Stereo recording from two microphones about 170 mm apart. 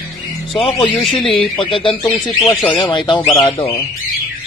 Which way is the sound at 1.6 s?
30° left (ahead or behind).